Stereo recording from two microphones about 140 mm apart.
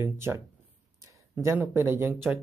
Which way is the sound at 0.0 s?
15° right (ahead or behind).